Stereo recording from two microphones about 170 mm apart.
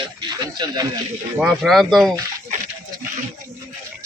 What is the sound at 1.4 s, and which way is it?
Speech, centre (ahead or behind).